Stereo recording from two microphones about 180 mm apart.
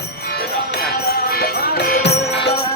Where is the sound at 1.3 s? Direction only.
55° left (ahead or behind).